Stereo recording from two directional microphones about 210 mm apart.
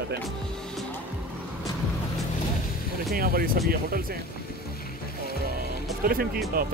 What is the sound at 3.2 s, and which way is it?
Speech, 45° right (ahead or behind).